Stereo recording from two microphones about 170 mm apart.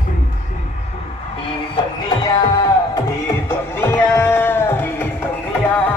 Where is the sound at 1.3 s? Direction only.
30° left (ahead or behind).